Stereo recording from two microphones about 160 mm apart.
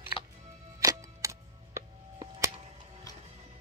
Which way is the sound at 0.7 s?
20° right (ahead or behind).